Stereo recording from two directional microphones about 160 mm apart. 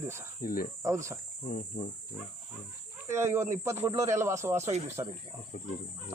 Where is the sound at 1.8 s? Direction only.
90° left.